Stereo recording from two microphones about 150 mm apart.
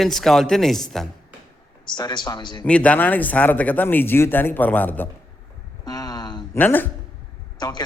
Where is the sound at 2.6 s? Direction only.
10° left (ahead or behind).